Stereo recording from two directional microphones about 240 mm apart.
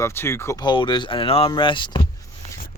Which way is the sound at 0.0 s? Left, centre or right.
Centre.